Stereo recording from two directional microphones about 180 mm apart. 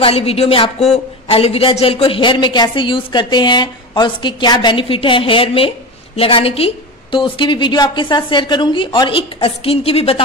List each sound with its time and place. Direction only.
0.0 s speech: 35° left (ahead or behind)